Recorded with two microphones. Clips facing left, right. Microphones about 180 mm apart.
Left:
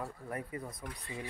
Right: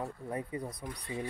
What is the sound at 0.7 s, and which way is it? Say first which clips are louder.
Speech: right 3 dB; 70° right (ahead or behind).